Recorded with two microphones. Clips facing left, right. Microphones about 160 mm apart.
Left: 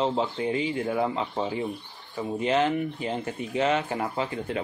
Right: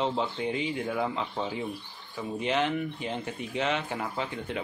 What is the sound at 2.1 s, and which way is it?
Speech, centre (ahead or behind).